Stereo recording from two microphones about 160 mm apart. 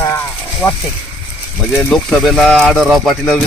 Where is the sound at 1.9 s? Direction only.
Centre (ahead or behind).